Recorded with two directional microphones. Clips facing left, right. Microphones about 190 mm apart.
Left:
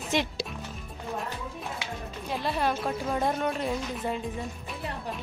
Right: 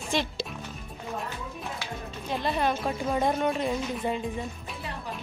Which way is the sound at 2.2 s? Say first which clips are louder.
Right 1 dB; 5° left (ahead or behind).